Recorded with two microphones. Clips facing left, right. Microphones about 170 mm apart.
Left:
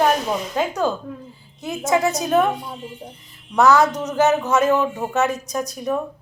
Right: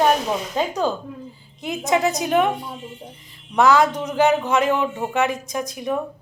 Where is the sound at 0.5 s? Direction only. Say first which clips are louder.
Left 1 dB; 15° right (ahead or behind).